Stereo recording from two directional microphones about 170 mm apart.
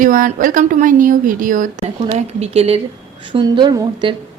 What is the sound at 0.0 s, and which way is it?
Speech, 55° right (ahead or behind).